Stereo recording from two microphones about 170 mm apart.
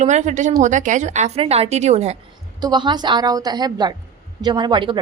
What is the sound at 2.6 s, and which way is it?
A woman's voice, 25° right (ahead or behind).